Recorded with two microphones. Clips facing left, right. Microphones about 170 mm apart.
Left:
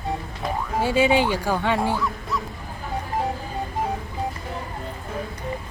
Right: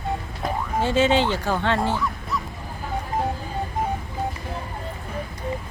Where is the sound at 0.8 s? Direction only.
10° left (ahead or behind).